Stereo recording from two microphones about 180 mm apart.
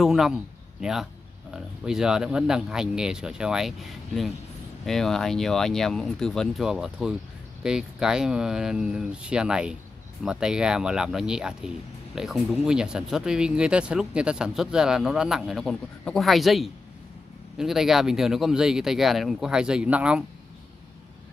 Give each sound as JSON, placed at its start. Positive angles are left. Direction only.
{"t": 0.0, "sound": "speech", "side_deg": 0}